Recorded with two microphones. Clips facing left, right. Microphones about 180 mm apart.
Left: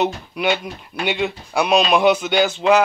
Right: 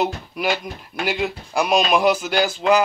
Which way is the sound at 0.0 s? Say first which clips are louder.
Left 2 dB; centre (ahead or behind).